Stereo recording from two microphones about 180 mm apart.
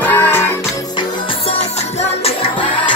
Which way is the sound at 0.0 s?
10° left (ahead or behind).